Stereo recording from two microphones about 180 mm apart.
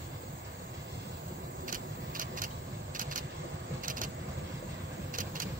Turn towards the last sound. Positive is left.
turn(degrees=-50)  # may be behind; listen again after turning